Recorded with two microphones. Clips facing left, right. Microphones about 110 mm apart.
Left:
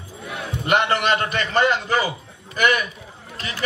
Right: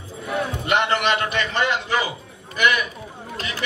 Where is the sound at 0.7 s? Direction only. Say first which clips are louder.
Left 2 dB; 40° left (ahead or behind).